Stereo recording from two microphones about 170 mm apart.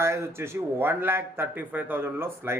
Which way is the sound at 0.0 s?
15° right (ahead or behind).